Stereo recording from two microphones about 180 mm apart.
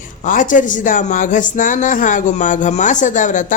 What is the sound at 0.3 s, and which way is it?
Speech, 45° left (ahead or behind).